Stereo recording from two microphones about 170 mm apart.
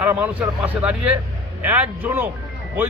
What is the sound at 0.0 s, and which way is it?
Speech, 10° right (ahead or behind).